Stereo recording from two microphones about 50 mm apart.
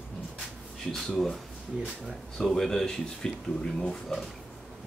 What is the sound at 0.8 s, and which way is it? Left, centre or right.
Speech, centre.